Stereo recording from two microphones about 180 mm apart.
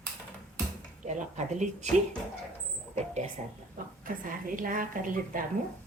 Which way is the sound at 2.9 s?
40° right (ahead or behind).